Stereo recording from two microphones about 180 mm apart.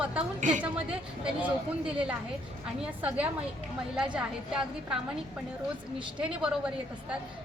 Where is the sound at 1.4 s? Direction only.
5° right (ahead or behind).